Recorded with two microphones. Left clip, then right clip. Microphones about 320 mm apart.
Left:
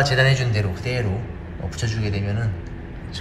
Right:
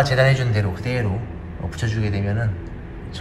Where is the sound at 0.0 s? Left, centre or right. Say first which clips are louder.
Right 1 dB; centre.